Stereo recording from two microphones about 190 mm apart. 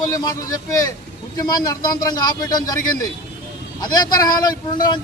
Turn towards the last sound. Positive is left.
turn(degrees=20)  # may be behind; listen again after turning